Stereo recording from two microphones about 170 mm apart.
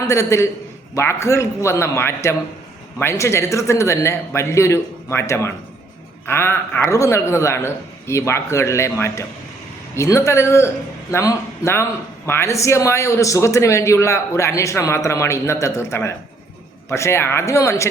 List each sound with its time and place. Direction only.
0.1 s a man's voice: 15° left (ahead or behind)